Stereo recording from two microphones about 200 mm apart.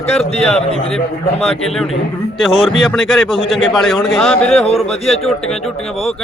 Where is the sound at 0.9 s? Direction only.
Centre (ahead or behind).